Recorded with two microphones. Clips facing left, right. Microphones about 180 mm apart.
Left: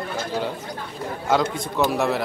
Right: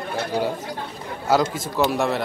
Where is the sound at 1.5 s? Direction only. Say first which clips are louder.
Even; centre (ahead or behind).